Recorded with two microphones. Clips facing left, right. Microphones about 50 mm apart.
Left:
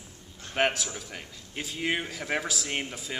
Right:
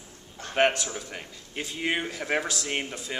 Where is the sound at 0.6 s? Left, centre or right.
Centre.